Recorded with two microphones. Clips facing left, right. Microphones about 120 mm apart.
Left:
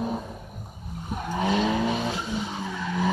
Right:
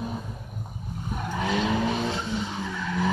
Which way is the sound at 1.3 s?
20° left (ahead or behind).